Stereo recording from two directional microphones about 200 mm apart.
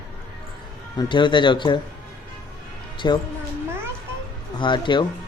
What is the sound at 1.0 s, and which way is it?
Speech, 25° left (ahead or behind).